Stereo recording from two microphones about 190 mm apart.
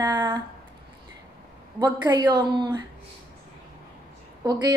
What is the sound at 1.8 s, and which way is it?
Speech, 20° right (ahead or behind).